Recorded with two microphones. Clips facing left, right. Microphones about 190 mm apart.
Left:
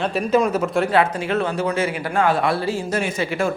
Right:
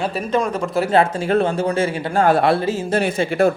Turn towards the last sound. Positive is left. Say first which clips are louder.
# right 5 dB
turn(degrees=-35)  # may be behind; listen again after turning